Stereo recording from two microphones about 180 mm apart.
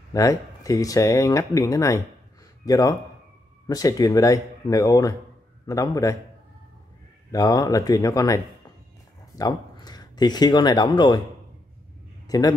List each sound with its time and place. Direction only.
0.1 s speech: 20° left (ahead or behind)
7.2 s speech: 20° left (ahead or behind)
12.3 s a man's voice: 20° left (ahead or behind)